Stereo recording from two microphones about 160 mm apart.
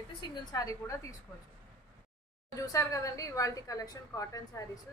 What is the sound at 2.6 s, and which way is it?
A woman's voice, 20° left (ahead or behind).